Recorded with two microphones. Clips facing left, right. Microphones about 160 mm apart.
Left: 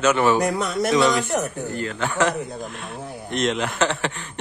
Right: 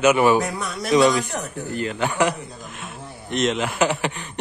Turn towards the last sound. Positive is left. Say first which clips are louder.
# right 1 dB
turn(degrees=-15)  # may be behind; listen again after turning